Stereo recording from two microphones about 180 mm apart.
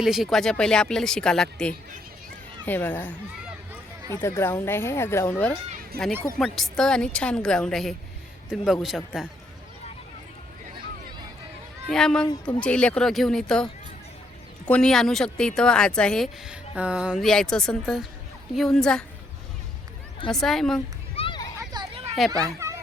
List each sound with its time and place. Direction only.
0.0 s speech: centre (ahead or behind)
5.9 s speech: 60° right (ahead or behind)
6.4 s speech: centre (ahead or behind)
11.9 s speech: 5° left (ahead or behind)
12.2 s speech: 25° left (ahead or behind)
12.5 s speech: 5° left (ahead or behind)
14.7 s speech: 5° left (ahead or behind)
20.3 s speech: centre (ahead or behind)
21.2 s a sound: 30° left (ahead or behind)
21.7 s a sound: 25° right (ahead or behind)
22.3 s a child's voice: 20° right (ahead or behind)